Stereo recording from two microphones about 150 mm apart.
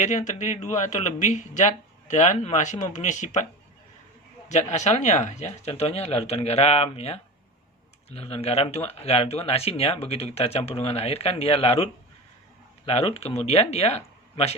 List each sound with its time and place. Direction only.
0.0 s speech: 55° left (ahead or behind)
4.4 s speech: 50° left (ahead or behind)